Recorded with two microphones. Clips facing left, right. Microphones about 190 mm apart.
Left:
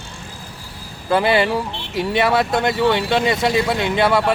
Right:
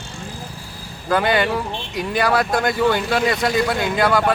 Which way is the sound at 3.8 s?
25° left (ahead or behind).